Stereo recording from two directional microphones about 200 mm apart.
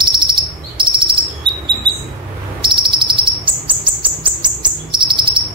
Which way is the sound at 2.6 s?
25° right (ahead or behind).